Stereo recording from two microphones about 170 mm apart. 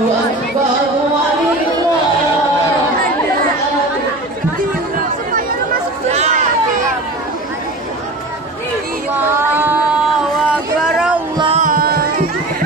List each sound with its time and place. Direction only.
6.0 s a sound: 40° right (ahead or behind)
9.4 s carnatic music: 10° right (ahead or behind)
11.3 s music: 35° right (ahead or behind)
11.6 s music: 60° right (ahead or behind)